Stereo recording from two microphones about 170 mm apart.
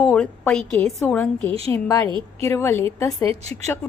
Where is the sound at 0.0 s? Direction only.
5° left (ahead or behind).